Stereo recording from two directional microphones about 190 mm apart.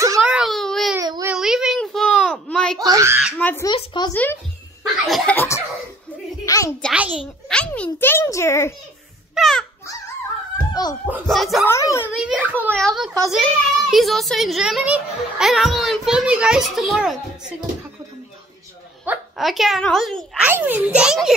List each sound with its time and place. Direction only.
0.0 s baby cry: 10° right (ahead or behind)
0.9 s baby cry: 15° right (ahead or behind)
1.3 s a sound: centre (ahead or behind)
2.8 s a sound: 20° right (ahead or behind)
3.3 s a child's voice: 10° left (ahead or behind)
3.6 s speech: 25° left (ahead or behind)
4.1 s a child's voice: 10° left (ahead or behind)
6.8 s a child's voice: 5° right (ahead or behind); by 8.7 s 15° left (ahead or behind)
9.3 s speech: centre (ahead or behind)
10.7 s a child's voice: 20° left (ahead or behind)
11.2 s a child's voice: centre (ahead or behind)
11.6 s a child's voice: 15° left (ahead or behind)
12.2 s a child's voice: 5° right (ahead or behind)
19.0 s a child's voice: centre (ahead or behind)